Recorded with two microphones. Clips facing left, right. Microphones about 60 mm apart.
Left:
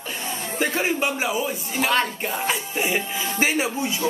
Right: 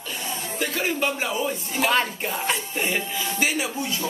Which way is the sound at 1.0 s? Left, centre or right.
Centre.